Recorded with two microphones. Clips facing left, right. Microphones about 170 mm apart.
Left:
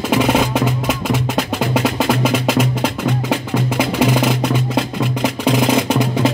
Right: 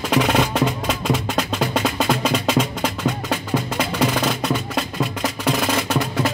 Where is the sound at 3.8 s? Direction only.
10° left (ahead or behind).